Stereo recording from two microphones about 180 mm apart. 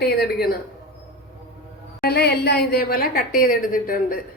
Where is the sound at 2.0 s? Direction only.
65° left (ahead or behind).